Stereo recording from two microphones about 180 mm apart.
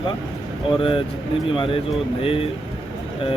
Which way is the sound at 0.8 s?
30° left (ahead or behind).